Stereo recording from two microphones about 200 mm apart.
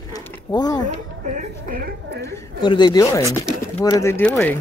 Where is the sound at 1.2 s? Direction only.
40° right (ahead or behind).